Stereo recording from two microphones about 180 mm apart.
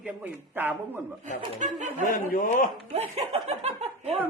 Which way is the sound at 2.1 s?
50° left (ahead or behind).